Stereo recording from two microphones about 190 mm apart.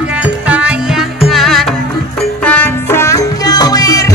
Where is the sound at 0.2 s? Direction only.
5° right (ahead or behind).